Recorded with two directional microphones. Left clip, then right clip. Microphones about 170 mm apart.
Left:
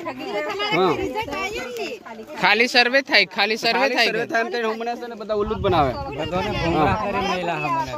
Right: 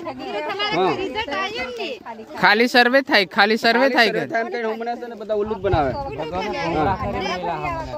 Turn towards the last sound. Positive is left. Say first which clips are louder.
# left 2 dB
turn(degrees=60)  # may be behind; listen again after turning